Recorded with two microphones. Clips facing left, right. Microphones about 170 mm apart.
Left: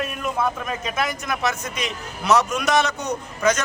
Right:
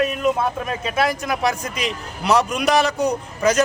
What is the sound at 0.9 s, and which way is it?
Speech, 30° right (ahead or behind).